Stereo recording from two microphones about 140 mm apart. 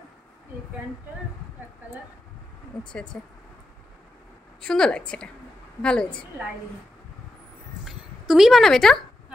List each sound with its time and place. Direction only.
2.9 s a woman's voice: 5° left (ahead or behind)
4.6 s a woman's voice: 5° left (ahead or behind)
7.8 s a sound: 5° right (ahead or behind)